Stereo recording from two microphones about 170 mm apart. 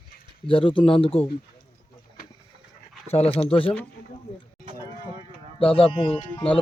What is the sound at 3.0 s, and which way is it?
Speech, 40° left (ahead or behind).